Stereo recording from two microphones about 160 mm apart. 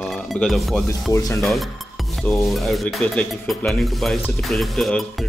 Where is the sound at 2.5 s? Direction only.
Centre (ahead or behind).